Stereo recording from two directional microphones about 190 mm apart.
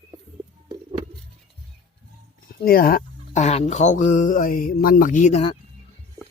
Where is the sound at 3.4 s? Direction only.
35° left (ahead or behind).